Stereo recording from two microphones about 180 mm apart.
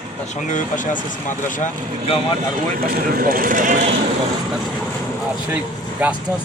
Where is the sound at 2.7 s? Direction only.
55° right (ahead or behind).